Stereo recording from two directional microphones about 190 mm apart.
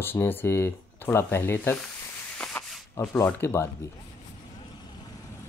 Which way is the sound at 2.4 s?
5° left (ahead or behind).